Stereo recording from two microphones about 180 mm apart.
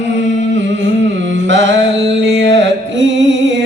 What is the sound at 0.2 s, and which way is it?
Carnatic music, 90° right.